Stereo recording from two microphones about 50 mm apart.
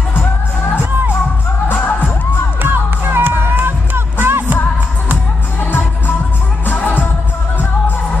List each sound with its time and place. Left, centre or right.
1.7 s music: left
2.6 s music: right
5.6 s music: left